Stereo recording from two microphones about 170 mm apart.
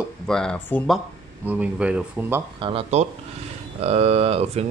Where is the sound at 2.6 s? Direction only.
35° right (ahead or behind).